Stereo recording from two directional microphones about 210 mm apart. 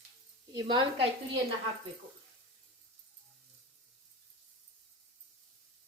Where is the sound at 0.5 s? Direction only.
25° right (ahead or behind).